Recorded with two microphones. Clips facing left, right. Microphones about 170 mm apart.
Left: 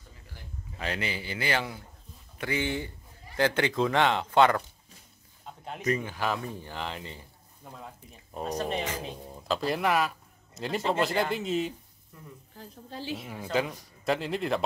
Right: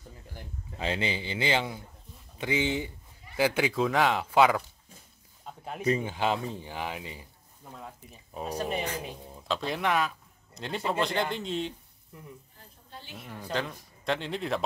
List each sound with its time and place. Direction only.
0.7 s a man's voice: 25° right (ahead or behind); by 4.6 s 5° right (ahead or behind)
5.8 s speech: 30° right (ahead or behind)
6.6 s speech: 15° right (ahead or behind)
8.4 s a man's voice: 5° right (ahead or behind)
12.5 s speech: 90° left
13.2 s a man's voice: 10° left (ahead or behind)